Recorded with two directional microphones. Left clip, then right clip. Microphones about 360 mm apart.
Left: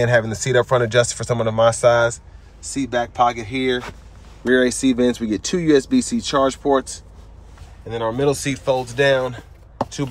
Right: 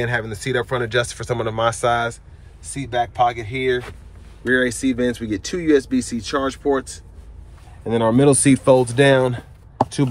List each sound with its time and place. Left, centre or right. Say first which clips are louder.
0.0 s speech: left 5 dB; centre
7.9 s speech: right 4 dB; centre